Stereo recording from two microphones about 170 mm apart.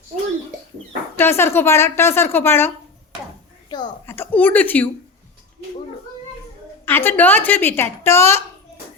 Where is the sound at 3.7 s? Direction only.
25° left (ahead or behind).